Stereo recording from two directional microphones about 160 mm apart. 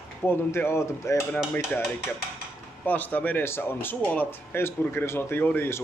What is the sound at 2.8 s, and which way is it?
Speech, 10° left (ahead or behind).